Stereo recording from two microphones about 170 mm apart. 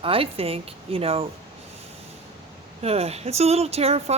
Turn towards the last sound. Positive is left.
turn(degrees=-35)  # may be behind; listen again after turning